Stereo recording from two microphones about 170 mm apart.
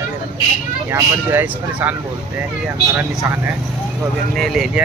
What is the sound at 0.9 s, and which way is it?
Speech, 15° right (ahead or behind).